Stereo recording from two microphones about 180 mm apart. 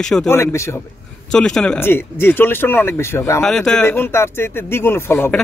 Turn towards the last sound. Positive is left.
turn(degrees=10)  # may be behind; listen again after turning